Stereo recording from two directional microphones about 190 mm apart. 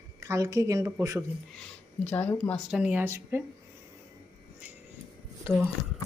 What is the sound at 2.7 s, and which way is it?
Speech, 10° right (ahead or behind).